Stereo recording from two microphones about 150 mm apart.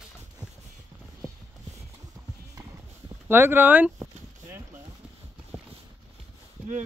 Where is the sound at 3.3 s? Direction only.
15° right (ahead or behind).